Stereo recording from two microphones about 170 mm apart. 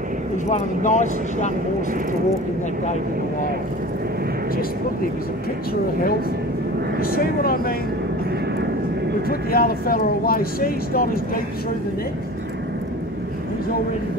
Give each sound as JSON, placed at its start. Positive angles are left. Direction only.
{"t": 0.5, "sound": "speech", "side_deg": 45}
{"t": 7.0, "sound": "speech", "side_deg": 60}
{"t": 9.3, "sound": "speech", "side_deg": 60}